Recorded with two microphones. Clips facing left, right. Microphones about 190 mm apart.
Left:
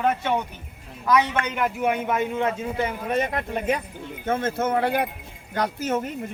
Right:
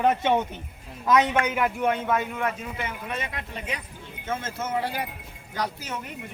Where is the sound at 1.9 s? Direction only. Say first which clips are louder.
Left 2 dB; 15° left (ahead or behind); by 6.1 s 50° left (ahead or behind).